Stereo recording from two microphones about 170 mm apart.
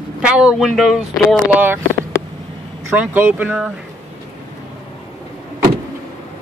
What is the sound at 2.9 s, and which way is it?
Speech, 10° right (ahead or behind).